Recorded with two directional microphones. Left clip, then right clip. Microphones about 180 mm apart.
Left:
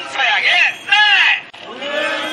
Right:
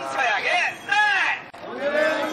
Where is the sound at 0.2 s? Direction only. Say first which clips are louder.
Left 9 dB; 40° right (ahead or behind).